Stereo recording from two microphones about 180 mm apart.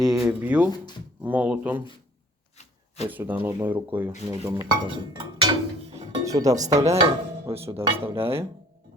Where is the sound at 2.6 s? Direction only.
40° left (ahead or behind).